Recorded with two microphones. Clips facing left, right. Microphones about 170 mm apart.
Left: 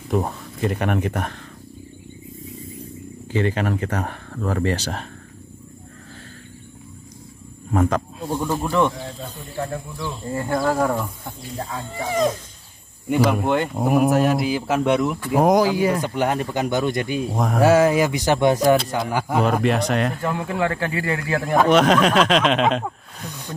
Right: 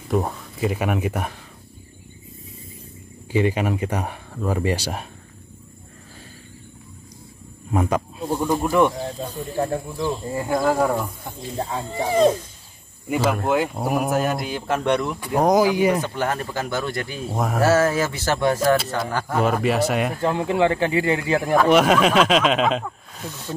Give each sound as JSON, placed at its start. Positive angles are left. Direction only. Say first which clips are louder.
{"t": 0.1, "sound": "speech", "louder": "even", "side_deg": 0}
{"t": 3.3, "sound": "speech", "louder": "right 1 dB", "side_deg": -10}
{"t": 7.7, "sound": "speech", "louder": "left 1 dB", "side_deg": -10}
{"t": 9.5, "sound": "speech", "louder": "right 4 dB", "side_deg": -30}
{"t": 10.3, "sound": "speech", "louder": "left 1 dB", "side_deg": -10}
{"t": 11.5, "sound": "speech", "louder": "right 4 dB", "side_deg": -30}
{"t": 13.1, "sound": "speech", "louder": "left 2 dB", "side_deg": -5}
{"t": 15.6, "sound": "speech", "louder": "right 1 dB", "side_deg": -15}
{"t": 16.0, "sound": "speech", "louder": "left 3 dB", "side_deg": 15}
{"t": 17.3, "sound": "speech", "louder": "left 1 dB", "side_deg": -5}
{"t": 17.6, "sound": "speech", "louder": "left 3 dB", "side_deg": 15}
{"t": 19.4, "sound": "speech", "louder": "right 2 dB", "side_deg": -5}
{"t": 20.2, "sound": "speech", "louder": "right 4 dB", "side_deg": -20}
{"t": 21.6, "sound": "speech", "louder": "left 1 dB", "side_deg": -10}